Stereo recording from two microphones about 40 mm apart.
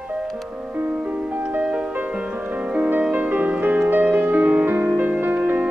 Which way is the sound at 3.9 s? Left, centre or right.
Right.